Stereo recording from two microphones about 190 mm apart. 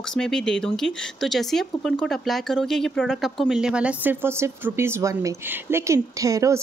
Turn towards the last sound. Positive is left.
turn(degrees=-15)  # may be behind; listen again after turning